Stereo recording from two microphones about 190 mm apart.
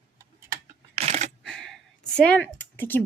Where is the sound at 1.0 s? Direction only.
35° right (ahead or behind).